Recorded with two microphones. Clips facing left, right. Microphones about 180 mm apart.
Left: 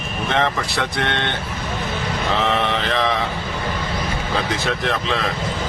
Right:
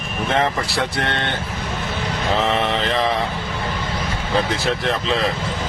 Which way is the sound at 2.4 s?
Centre (ahead or behind).